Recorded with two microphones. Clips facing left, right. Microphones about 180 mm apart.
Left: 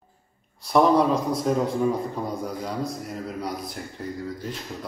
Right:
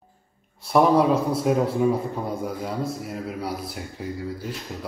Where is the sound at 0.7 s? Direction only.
5° right (ahead or behind).